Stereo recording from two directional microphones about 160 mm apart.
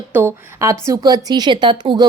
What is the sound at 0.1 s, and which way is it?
A woman's voice, 15° right (ahead or behind).